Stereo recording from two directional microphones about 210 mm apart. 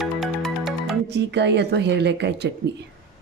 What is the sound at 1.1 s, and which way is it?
Speech, 55° right (ahead or behind).